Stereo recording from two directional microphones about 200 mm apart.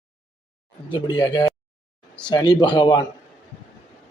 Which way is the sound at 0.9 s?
20° left (ahead or behind).